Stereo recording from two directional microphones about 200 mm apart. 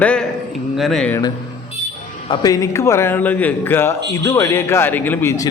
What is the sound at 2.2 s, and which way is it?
Speech, 20° left (ahead or behind).